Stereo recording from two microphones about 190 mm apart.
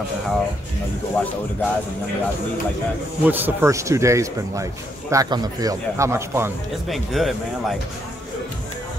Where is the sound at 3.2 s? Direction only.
10° right (ahead or behind).